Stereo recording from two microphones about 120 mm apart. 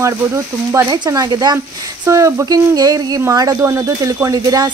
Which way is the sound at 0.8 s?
35° right (ahead or behind).